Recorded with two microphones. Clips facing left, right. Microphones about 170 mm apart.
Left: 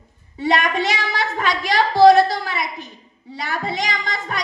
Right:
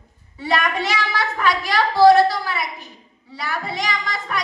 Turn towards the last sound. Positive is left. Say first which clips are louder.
# even
turn(degrees=20)  # may be behind; listen again after turning